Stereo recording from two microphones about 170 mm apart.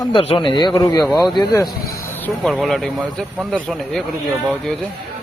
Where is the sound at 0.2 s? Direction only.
30° left (ahead or behind).